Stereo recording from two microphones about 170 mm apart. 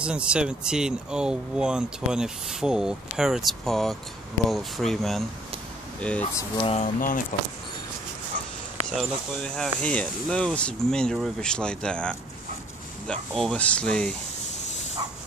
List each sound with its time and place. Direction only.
0.0 s speech: 5° right (ahead or behind)
6.5 s speech: 30° left (ahead or behind)
6.8 s speech: 55° left (ahead or behind)
8.9 s speech: 5° left (ahead or behind)